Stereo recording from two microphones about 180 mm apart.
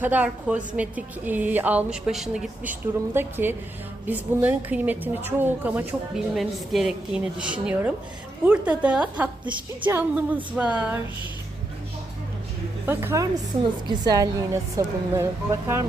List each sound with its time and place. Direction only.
0.0 s a woman's voice: 10° right (ahead or behind)
12.8 s a woman's voice: 10° right (ahead or behind)